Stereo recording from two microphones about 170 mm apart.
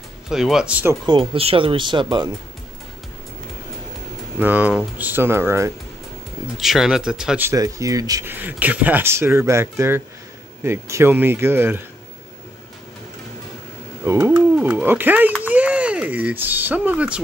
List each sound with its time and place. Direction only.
0.3 s speech: centre (ahead or behind)
1.0 s speech: 30° right (ahead or behind)
4.4 s speech: 10° right (ahead or behind)
6.6 s speech: centre (ahead or behind)
14.0 s speech: 15° right (ahead or behind)